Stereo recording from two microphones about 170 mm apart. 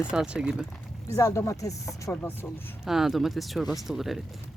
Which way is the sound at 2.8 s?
Centre (ahead or behind).